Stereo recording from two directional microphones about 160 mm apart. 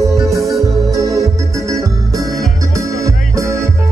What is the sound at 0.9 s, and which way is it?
Organ, 20° right (ahead or behind).